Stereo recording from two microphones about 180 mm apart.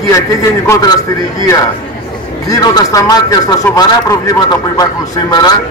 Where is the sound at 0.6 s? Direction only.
20° left (ahead or behind).